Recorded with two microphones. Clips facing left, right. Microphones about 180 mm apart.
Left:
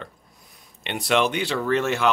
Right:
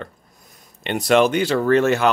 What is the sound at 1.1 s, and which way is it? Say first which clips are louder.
Speech: right 6 dB; 45° right (ahead or behind).